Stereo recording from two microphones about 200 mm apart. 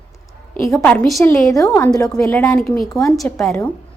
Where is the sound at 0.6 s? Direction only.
15° left (ahead or behind).